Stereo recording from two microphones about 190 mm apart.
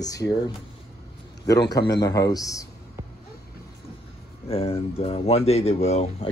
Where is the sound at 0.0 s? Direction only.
20° left (ahead or behind).